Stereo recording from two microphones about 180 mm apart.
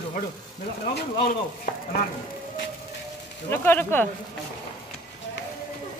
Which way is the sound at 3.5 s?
10° left (ahead or behind).